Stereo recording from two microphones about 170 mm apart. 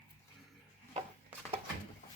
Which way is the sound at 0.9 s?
35° right (ahead or behind).